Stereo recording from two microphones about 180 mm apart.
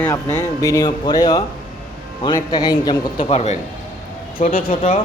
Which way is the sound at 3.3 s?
35° left (ahead or behind).